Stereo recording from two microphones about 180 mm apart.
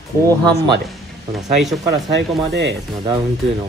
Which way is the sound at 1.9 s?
70° right (ahead or behind).